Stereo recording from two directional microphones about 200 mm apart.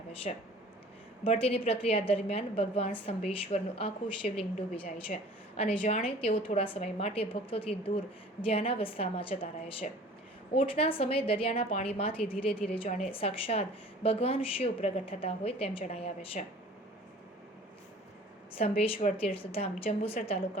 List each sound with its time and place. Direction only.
0.3 s a woman's voice: 40° left (ahead or behind)
18.5 s a woman's voice: 30° left (ahead or behind)